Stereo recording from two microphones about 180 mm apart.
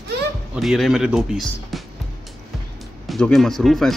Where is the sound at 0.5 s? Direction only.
Centre (ahead or behind).